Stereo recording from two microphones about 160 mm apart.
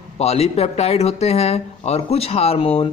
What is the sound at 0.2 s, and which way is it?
Speech, 40° left (ahead or behind).